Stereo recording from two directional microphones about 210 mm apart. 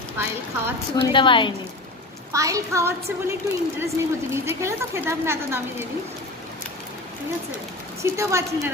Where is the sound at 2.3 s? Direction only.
15° right (ahead or behind).